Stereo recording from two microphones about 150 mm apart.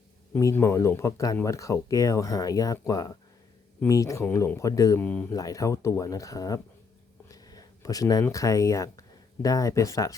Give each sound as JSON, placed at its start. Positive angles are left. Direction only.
{"t": 0.3, "sound": "speech", "side_deg": 20}
{"t": 4.9, "sound": "speech", "side_deg": 10}
{"t": 5.3, "sound": "speech", "side_deg": 25}
{"t": 7.3, "sound": "a sound", "side_deg": 25}
{"t": 8.2, "sound": "speech", "side_deg": 20}